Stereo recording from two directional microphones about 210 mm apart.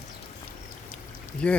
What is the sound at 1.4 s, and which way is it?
Speech, 5° left (ahead or behind).